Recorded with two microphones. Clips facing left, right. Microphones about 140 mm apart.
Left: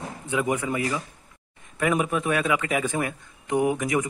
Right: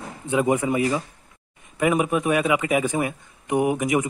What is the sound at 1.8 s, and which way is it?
A man's voice, 10° right (ahead or behind).